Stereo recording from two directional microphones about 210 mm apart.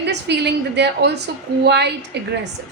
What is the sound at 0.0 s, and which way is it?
A woman's voice, 55° right (ahead or behind).